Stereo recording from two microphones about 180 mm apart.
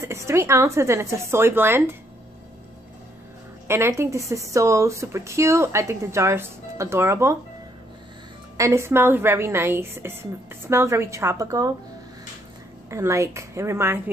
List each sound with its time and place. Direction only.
0.1 s a woman's voice: 15° right (ahead or behind)
3.6 s a woman's voice: 15° right (ahead or behind)
8.5 s a woman's voice: 15° right (ahead or behind)
12.9 s a woman's voice: 15° right (ahead or behind)